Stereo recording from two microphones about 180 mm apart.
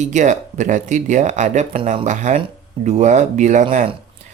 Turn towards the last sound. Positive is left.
turn(degrees=-45)  # may be behind; listen again after turning